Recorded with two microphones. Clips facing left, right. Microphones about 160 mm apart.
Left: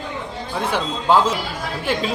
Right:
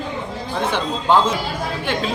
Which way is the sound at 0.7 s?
5° left (ahead or behind).